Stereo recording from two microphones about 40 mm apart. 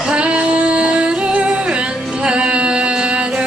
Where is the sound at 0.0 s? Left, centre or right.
Right.